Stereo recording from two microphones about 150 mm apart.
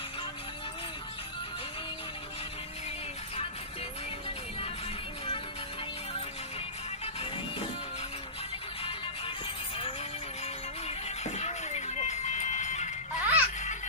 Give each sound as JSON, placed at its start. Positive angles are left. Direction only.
{"t": 10.9, "sound": "music", "side_deg": 45}
{"t": 13.2, "sound": "music", "side_deg": -10}